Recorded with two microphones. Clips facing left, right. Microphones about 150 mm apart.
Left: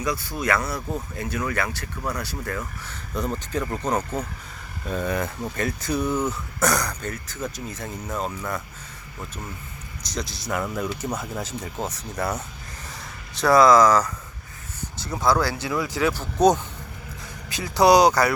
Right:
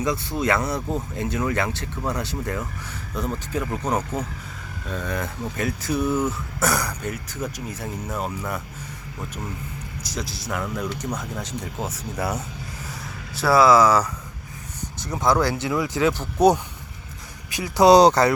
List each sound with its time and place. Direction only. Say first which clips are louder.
0.0 s speech: right 3 dB; 25° right (ahead or behind)
3.2 s speech: even; centre (ahead or behind)
4.9 s speech: left 3 dB; 5° left (ahead or behind)
10.0 s speech: left 1 dB; 5° right (ahead or behind)
17.5 s speech: right 2 dB; 15° right (ahead or behind)